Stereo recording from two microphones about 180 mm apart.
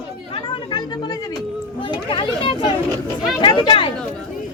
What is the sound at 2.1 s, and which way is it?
Chatter, 25° left (ahead or behind).